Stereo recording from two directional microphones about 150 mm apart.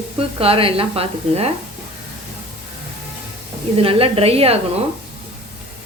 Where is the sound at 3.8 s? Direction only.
40° right (ahead or behind).